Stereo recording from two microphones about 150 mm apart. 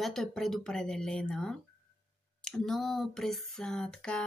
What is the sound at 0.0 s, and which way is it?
Speech, 5° left (ahead or behind).